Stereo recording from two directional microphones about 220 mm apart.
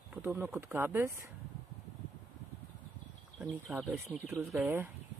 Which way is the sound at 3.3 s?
Centre (ahead or behind).